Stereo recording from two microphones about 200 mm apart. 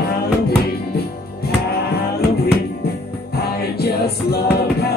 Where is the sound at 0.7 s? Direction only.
50° left (ahead or behind).